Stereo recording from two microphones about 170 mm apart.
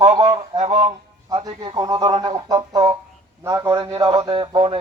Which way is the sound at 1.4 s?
25° right (ahead or behind).